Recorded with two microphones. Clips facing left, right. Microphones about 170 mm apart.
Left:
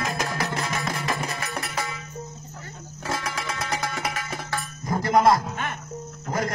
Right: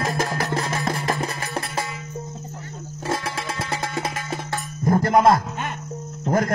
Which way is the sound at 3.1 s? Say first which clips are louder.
Right 3 dB; 25° right (ahead or behind).